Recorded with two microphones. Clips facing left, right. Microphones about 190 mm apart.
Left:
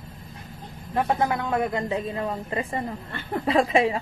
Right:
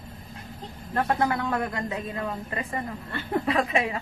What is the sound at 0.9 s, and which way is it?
A woman's voice, 15° left (ahead or behind).